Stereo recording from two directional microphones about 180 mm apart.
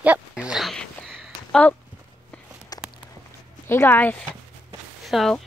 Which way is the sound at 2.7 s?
20° left (ahead or behind).